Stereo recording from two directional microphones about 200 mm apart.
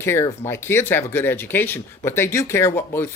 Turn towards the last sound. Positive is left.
turn(degrees=10)  # may be behind; listen again after turning